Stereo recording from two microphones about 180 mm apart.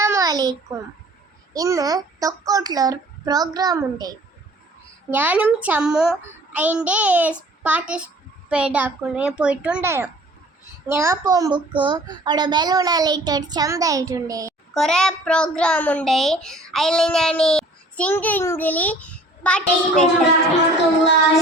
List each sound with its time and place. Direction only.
0.0 s a sound: 15° right (ahead or behind)
1.5 s a child's voice: 20° right (ahead or behind)
5.1 s a child's voice: 10° right (ahead or behind)
14.7 s a child's voice: 5° left (ahead or behind)